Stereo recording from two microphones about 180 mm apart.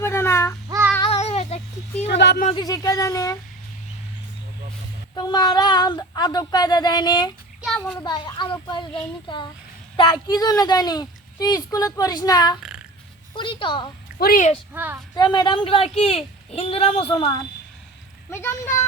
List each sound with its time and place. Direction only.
0.0 s child singing: 15° left (ahead or behind)
1.0 s a sound: 35° left (ahead or behind)
2.0 s speech: 70° left (ahead or behind)
2.6 s a woman's voice: 20° left (ahead or behind)
5.1 s a woman's voice: 25° left (ahead or behind)
7.6 s child singing: centre (ahead or behind)
7.9 s a woman's voice: 25° left (ahead or behind)
10.0 s a woman's voice: 25° left (ahead or behind)
14.2 s speech: 50° left (ahead or behind)
14.7 s a child's voice: 10° right (ahead or behind)
15.1 s a woman's voice: 25° left (ahead or behind)
18.3 s speech: 15° left (ahead or behind)